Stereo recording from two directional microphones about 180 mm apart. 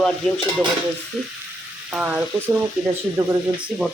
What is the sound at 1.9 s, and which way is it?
Frying, 5° right (ahead or behind).